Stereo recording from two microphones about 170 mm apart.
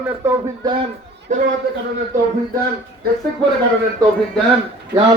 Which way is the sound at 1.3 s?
45° right (ahead or behind).